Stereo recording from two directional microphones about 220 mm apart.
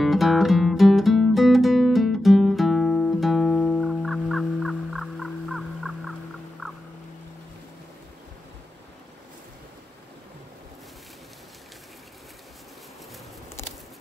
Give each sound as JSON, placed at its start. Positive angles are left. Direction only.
{"t": 0.0, "sound": "music", "side_deg": 0}
{"t": 6.6, "sound": "turkey", "side_deg": 0}